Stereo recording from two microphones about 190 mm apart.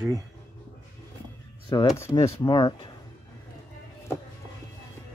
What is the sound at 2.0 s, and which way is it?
Speech, 15° left (ahead or behind).